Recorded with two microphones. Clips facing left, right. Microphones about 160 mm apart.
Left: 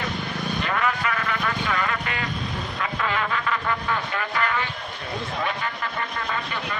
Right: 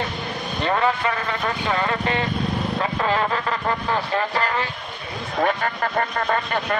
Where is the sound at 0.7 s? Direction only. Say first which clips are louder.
Right 6 dB; 30° right (ahead or behind).